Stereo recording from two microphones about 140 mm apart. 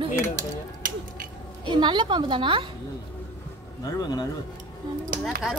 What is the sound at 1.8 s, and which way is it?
Speech, 35° right (ahead or behind).